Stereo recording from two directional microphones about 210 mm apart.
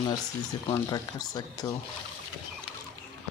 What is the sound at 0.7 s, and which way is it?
Speech, 20° left (ahead or behind).